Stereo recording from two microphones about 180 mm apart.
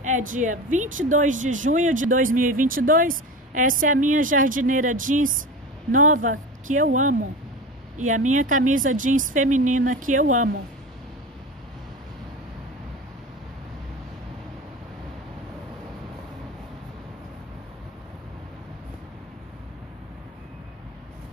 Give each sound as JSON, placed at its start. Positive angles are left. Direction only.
{"t": 0.0, "sound": "speech", "side_deg": -45}